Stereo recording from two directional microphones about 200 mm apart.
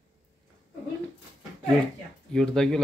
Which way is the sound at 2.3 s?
Centre (ahead or behind).